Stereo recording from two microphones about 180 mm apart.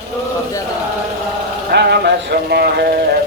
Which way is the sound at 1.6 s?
65° right (ahead or behind).